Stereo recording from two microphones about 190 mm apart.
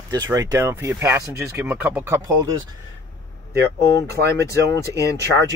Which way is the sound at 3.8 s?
15° left (ahead or behind).